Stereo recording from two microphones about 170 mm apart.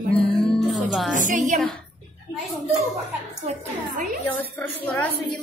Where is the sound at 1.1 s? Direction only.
50° right (ahead or behind).